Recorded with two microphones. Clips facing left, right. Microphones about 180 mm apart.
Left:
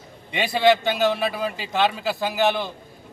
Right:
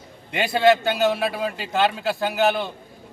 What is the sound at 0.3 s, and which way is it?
A man's voice, centre (ahead or behind).